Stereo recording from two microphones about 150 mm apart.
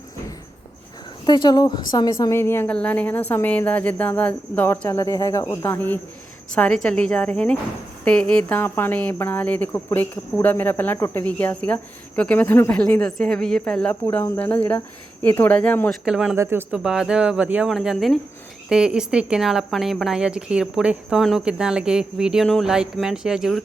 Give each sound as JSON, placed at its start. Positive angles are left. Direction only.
{"t": 1.2, "sound": "speech", "side_deg": 30}
{"t": 15.9, "sound": "speech", "side_deg": -5}
{"t": 16.3, "sound": "speech", "side_deg": -15}
{"t": 16.7, "sound": "speech", "side_deg": -5}